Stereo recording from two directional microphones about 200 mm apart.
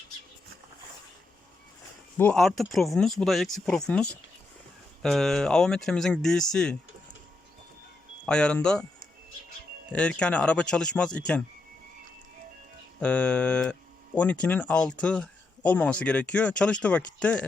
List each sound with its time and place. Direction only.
2.1 s speech: 5° left (ahead or behind)
8.3 s speech: 5° left (ahead or behind)
9.9 s speech: 5° left (ahead or behind)
13.0 s speech: 5° left (ahead or behind)